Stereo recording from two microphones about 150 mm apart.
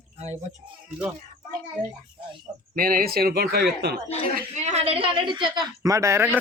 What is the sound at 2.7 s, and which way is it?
A man's voice, 75° right (ahead or behind).